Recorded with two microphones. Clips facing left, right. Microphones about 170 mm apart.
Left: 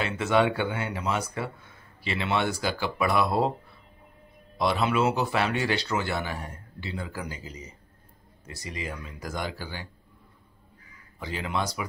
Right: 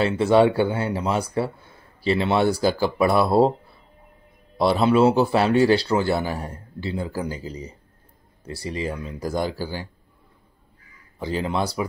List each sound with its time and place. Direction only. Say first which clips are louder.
0.0 s speech: right 7 dB; 35° right (ahead or behind)
4.6 s speech: right 7 dB; 35° right (ahead or behind)
11.1 s speech: right 6 dB; 35° right (ahead or behind)